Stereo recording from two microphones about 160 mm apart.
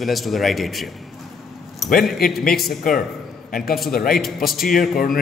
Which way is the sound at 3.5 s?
65° left (ahead or behind).